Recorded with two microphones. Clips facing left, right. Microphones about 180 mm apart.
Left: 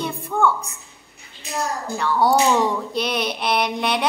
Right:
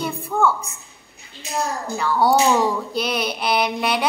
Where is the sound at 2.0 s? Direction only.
Centre (ahead or behind).